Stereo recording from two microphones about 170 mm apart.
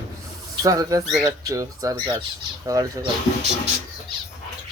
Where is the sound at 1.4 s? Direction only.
20° right (ahead or behind).